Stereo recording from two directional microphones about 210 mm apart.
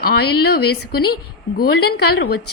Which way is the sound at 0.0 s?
45° left (ahead or behind).